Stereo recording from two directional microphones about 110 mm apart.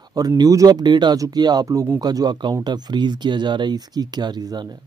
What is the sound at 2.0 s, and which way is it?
Speech, 35° right (ahead or behind).